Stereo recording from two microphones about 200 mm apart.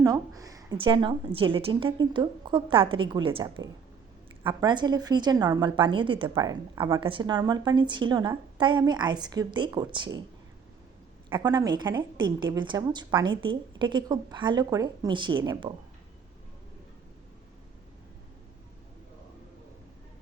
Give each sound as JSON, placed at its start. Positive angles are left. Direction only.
{"t": 0.0, "sound": "a woman's voice", "side_deg": -15}
{"t": 11.3, "sound": "a woman's voice", "side_deg": -20}